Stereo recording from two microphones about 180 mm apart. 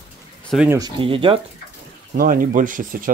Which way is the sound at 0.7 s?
20° right (ahead or behind).